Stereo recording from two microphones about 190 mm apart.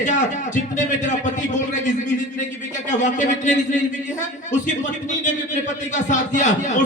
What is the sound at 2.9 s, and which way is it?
Speech, 40° left (ahead or behind).